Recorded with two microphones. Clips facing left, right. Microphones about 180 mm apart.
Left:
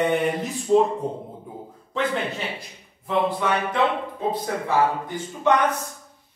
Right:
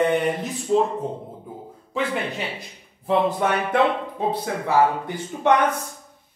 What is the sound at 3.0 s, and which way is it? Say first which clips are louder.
Speech: right 2 dB; 45° right (ahead or behind).